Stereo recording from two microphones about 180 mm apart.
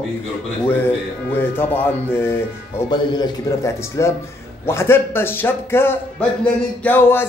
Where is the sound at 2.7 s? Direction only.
25° left (ahead or behind).